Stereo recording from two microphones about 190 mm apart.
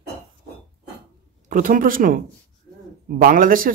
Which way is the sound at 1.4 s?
45° right (ahead or behind).